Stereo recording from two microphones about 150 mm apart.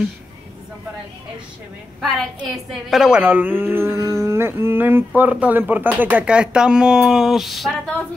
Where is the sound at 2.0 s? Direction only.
Centre (ahead or behind).